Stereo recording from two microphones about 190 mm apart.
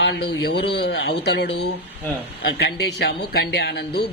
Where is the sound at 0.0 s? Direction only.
65° left (ahead or behind).